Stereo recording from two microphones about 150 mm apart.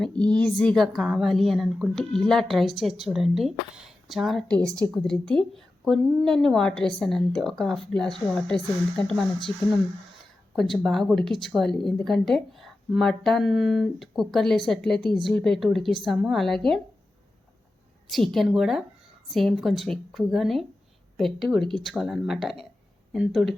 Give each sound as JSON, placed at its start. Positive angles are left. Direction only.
{"t": 0.0, "sound": "a woman's voice", "side_deg": 5}
{"t": 4.6, "sound": "a woman's voice", "side_deg": -20}
{"t": 5.0, "sound": "a woman's voice", "side_deg": 5}
{"t": 10.5, "sound": "a woman's voice", "side_deg": 0}
{"t": 18.1, "sound": "a woman's voice", "side_deg": 0}